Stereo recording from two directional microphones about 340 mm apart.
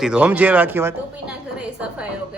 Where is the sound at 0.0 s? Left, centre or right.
Centre.